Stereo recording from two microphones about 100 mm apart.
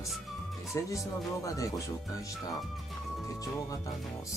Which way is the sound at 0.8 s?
35° left (ahead or behind).